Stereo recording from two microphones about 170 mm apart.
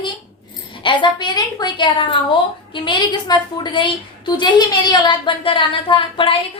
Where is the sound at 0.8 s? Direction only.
30° left (ahead or behind).